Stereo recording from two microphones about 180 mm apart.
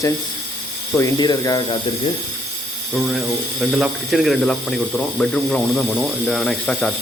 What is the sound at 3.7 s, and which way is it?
Speech, centre (ahead or behind).